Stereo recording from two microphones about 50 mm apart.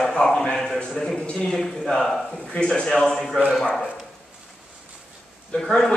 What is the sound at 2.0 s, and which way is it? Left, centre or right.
Speech, centre.